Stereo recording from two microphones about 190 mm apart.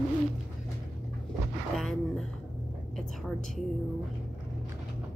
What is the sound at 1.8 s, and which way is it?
Speech, centre (ahead or behind).